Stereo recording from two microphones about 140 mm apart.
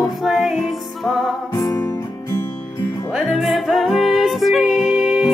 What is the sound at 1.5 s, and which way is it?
Music, 25° left (ahead or behind).